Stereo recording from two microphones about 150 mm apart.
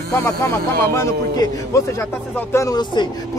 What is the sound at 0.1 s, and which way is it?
Speech, 20° left (ahead or behind).